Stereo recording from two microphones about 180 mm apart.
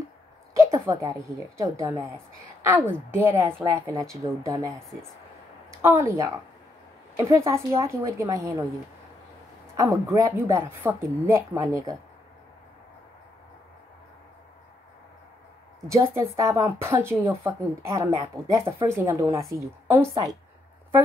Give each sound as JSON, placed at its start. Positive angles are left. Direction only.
{"t": 0.8, "sound": "a woman's voice", "side_deg": -15}
{"t": 9.8, "sound": "a woman's voice", "side_deg": -15}
{"t": 15.9, "sound": "a woman's voice", "side_deg": -15}